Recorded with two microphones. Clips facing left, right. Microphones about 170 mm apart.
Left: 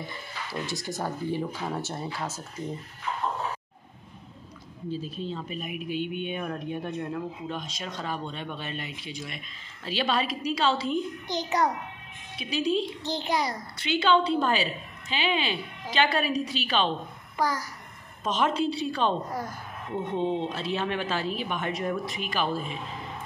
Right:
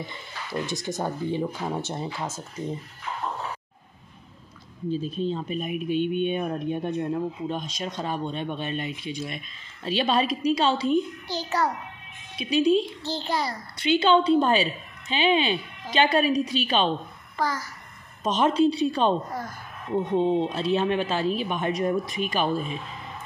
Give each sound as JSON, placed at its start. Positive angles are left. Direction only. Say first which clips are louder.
{"t": 0.5, "sound": "speech", "louder": "right 4 dB", "side_deg": -20}
{"t": 4.9, "sound": "speech", "louder": "right 6 dB", "side_deg": -20}
{"t": 11.2, "sound": "a child's voice", "louder": "even", "side_deg": 20}
{"t": 12.4, "sound": "speech", "louder": "right 6 dB", "side_deg": -20}
{"t": 13.0, "sound": "a child's voice", "louder": "even", "side_deg": 15}
{"t": 13.8, "sound": "speech", "louder": "right 4 dB", "side_deg": -20}
{"t": 17.4, "sound": "a child's voice", "louder": "even", "side_deg": 15}
{"t": 18.2, "sound": "speech", "louder": "right 5 dB", "side_deg": -20}
{"t": 20.2, "sound": "speech", "louder": "right 5 dB", "side_deg": -15}